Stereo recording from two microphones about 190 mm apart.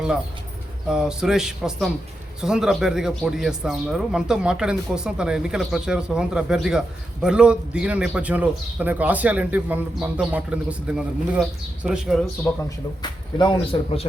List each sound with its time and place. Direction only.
0.9 s speech: 5° right (ahead or behind)
13.0 s speech: 25° left (ahead or behind)